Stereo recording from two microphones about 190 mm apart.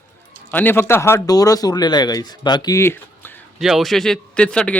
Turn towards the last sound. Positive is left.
turn(degrees=5)  # may be behind; listen again after turning